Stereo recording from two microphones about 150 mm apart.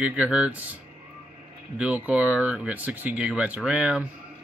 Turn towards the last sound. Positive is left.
turn(degrees=-10)  # may be behind; listen again after turning